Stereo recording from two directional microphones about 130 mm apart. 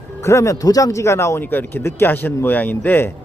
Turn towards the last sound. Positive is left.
turn(degrees=15)  # may be behind; listen again after turning